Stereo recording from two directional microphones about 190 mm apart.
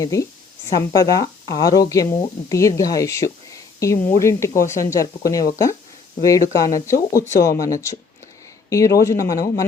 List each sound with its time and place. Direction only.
0.0 s speech: 15° left (ahead or behind)